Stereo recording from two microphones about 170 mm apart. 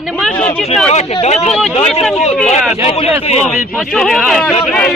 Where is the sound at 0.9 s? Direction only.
40° left (ahead or behind).